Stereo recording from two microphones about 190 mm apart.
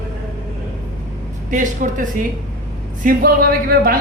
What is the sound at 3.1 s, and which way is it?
Speech, 50° right (ahead or behind).